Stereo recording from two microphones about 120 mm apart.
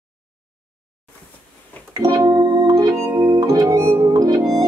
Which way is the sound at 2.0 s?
30° right (ahead or behind).